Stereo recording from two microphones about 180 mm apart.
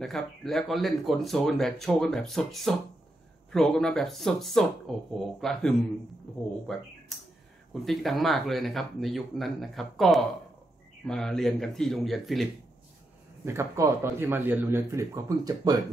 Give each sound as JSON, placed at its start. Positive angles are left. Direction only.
{"t": 0.0, "sound": "speech", "side_deg": 0}
{"t": 7.1, "sound": "a sound", "side_deg": 0}
{"t": 7.8, "sound": "speech", "side_deg": 0}
{"t": 13.5, "sound": "a man's voice", "side_deg": -15}